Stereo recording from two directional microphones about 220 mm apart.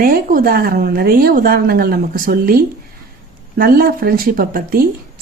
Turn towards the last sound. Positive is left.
turn(degrees=-40)  # may be behind; listen again after turning